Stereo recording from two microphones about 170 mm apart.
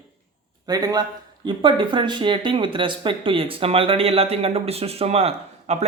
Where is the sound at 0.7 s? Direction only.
20° right (ahead or behind).